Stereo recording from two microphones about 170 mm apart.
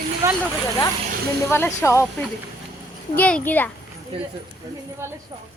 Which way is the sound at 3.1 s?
10° left (ahead or behind).